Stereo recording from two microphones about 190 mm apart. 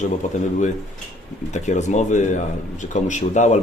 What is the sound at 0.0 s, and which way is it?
Speech, 40° left (ahead or behind).